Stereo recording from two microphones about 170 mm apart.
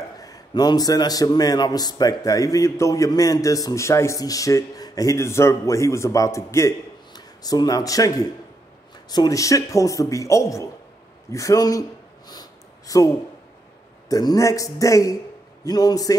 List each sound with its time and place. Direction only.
0.2 s a man's voice: 20° left (ahead or behind)
9.1 s a man's voice: 20° left (ahead or behind)
12.3 s a sound: 20° left (ahead or behind)
14.0 s a man's voice: 20° left (ahead or behind)